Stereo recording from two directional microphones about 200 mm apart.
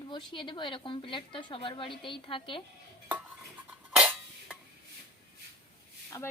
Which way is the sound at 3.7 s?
5° right (ahead or behind).